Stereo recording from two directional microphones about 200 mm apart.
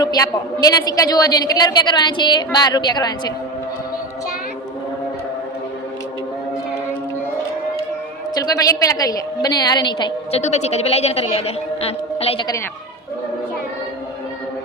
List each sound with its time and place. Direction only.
0.0 s a woman's voice: 20° left (ahead or behind)
8.4 s a woman's voice: 15° left (ahead or behind)
10.4 s speech: 35° left (ahead or behind)